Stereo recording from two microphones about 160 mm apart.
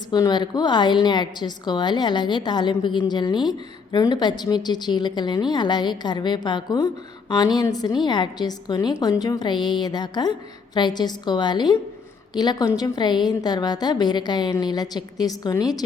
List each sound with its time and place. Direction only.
0.1 s a woman's voice: 25° left (ahead or behind)